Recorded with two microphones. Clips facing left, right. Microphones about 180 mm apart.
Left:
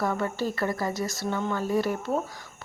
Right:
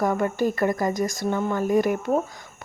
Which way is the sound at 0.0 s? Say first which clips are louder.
Right 5 dB; 15° right (ahead or behind).